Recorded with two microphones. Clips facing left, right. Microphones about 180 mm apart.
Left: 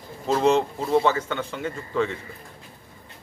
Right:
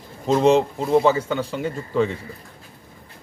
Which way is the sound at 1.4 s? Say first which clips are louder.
Right 4 dB; 35° right (ahead or behind).